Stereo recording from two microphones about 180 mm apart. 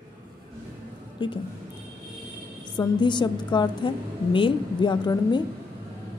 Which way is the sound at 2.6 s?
25° left (ahead or behind).